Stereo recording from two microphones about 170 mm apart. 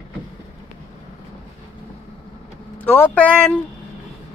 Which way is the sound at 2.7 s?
10° left (ahead or behind).